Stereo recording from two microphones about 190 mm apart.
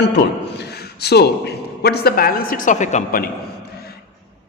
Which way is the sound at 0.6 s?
60° left (ahead or behind).